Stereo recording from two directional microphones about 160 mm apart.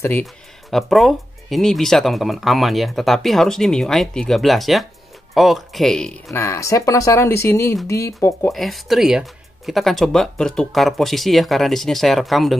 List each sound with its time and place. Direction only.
0.2 s speech: centre (ahead or behind)
6.3 s speech: 15° left (ahead or behind)
8.5 s speech: centre (ahead or behind)